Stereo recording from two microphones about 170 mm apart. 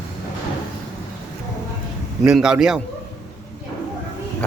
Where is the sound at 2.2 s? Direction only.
5° right (ahead or behind).